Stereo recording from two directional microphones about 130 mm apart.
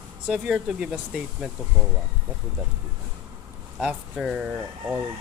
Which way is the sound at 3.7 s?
5° right (ahead or behind).